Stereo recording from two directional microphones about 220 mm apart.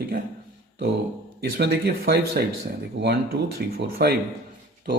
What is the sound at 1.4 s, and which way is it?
Speech, 45° right (ahead or behind).